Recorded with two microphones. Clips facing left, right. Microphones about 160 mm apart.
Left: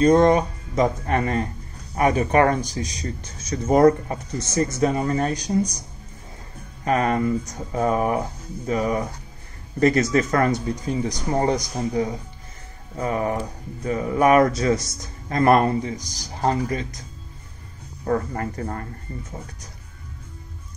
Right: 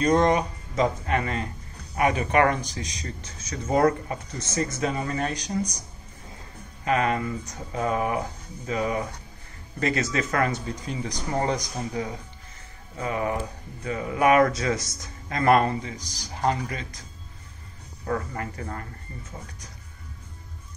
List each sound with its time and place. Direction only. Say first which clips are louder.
0.2 s speech: left 5 dB; 30° left (ahead or behind)
6.8 s speech: left 3 dB; 40° left (ahead or behind)
18.0 s speech: left 5 dB; 40° left (ahead or behind)